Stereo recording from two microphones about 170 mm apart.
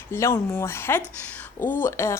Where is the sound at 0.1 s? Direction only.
15° left (ahead or behind).